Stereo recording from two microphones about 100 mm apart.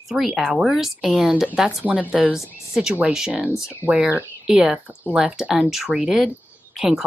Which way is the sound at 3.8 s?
20° right (ahead or behind).